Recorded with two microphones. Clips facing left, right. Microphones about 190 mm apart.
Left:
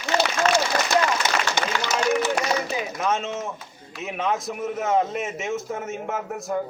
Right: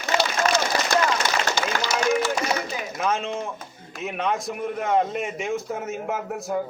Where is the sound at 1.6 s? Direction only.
20° left (ahead or behind).